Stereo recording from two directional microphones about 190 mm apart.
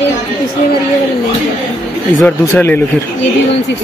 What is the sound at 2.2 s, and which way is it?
Speech, 10° left (ahead or behind).